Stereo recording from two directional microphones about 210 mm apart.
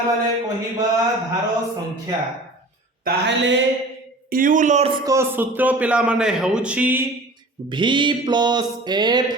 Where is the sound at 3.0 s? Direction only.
55° right (ahead or behind).